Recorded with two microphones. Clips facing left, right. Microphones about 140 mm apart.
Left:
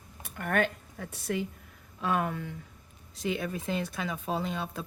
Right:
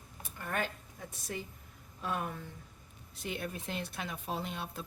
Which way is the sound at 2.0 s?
90° left.